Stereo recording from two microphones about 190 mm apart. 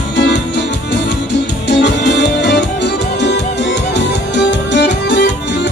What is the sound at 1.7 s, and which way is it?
Music, 65° left (ahead or behind).